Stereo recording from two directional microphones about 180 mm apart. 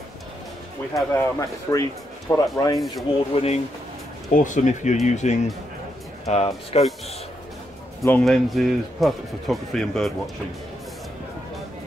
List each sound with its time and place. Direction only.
1.1 s speech: 20° left (ahead or behind)
3.1 s speech: 35° left (ahead or behind)
8.0 s speech: 10° left (ahead or behind)
8.3 s speech: centre (ahead or behind)